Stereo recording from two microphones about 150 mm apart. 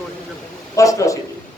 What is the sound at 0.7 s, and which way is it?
Speech, 20° left (ahead or behind).